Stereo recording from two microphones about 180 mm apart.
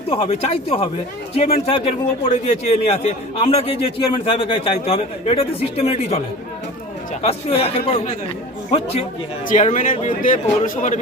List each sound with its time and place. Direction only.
0.1 s a man's voice: 35° left (ahead or behind)
9.5 s speech: 45° left (ahead or behind)